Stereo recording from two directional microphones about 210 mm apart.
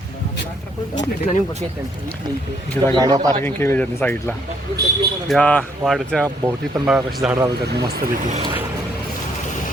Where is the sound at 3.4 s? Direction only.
10° left (ahead or behind).